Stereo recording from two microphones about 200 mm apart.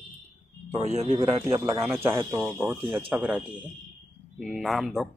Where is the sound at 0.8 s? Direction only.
35° right (ahead or behind).